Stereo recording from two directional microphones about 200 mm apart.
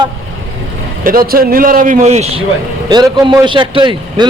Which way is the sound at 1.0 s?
45° right (ahead or behind).